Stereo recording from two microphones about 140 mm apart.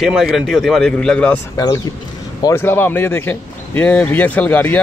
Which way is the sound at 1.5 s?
25° left (ahead or behind).